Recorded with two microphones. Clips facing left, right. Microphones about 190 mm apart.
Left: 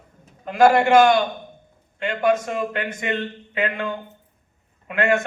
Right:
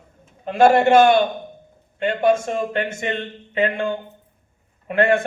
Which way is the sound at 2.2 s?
25° right (ahead or behind).